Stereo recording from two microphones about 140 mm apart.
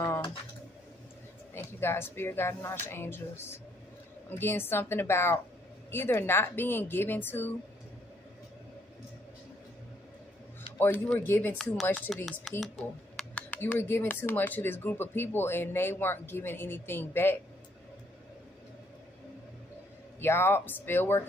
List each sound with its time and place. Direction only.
1.5 s speech: 15° left (ahead or behind)
10.8 s speech: 15° left (ahead or behind)
11.5 s speech: centre (ahead or behind)
20.2 s speech: 15° left (ahead or behind)